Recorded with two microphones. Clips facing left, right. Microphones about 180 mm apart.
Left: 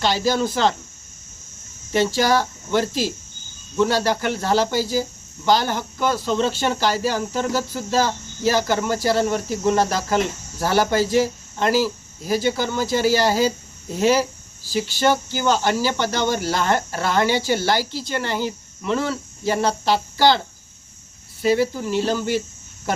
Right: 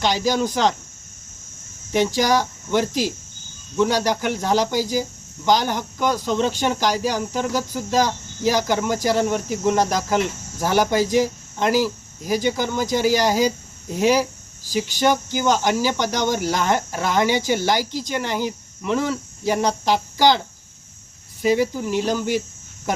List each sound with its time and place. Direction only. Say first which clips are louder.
0.0 s speech: even; 15° right (ahead or behind)
1.9 s speech: even; 15° right (ahead or behind)
21.4 s speech: even; 15° right (ahead or behind)